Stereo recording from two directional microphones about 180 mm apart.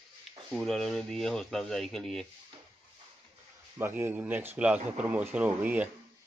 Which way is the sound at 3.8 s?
10° right (ahead or behind).